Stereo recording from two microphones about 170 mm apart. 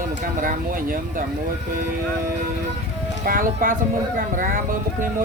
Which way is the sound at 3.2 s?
55° right (ahead or behind).